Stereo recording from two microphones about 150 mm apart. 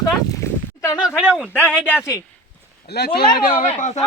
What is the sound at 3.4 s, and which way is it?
Speech, 70° left (ahead or behind).